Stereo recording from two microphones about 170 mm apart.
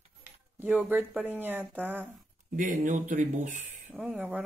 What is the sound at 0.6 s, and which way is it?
Speech, 10° right (ahead or behind).